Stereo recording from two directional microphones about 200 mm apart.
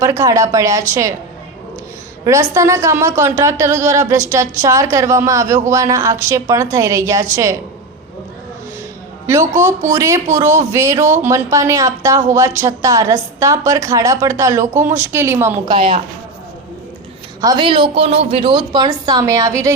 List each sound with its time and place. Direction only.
0.0 s a woman's voice: 15° right (ahead or behind)
2.2 s a woman's voice: 15° right (ahead or behind)
9.2 s a woman's voice: 15° right (ahead or behind)
15.7 s a woman's voice: 25° right (ahead or behind)
17.4 s a woman's voice: 20° right (ahead or behind)